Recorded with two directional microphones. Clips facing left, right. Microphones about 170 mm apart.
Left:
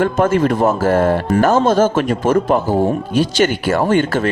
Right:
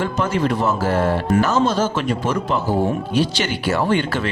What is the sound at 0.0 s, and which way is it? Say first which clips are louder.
Speech: left 6 dB; 50° left (ahead or behind).